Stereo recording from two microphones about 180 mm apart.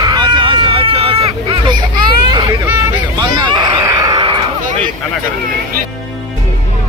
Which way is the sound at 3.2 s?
25° right (ahead or behind).